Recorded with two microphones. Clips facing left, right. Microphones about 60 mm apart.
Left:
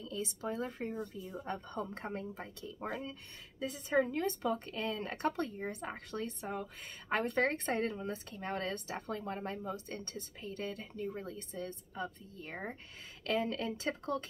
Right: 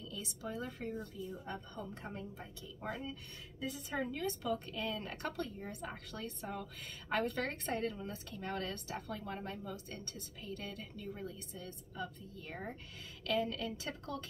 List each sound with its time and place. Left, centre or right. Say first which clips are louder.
0.0 s speech: left 5 dB; left
1.4 s a woman's voice: left 5 dB; left
2.8 s a woman's voice: left 1 dB; left
3.9 s speech: left 8 dB; left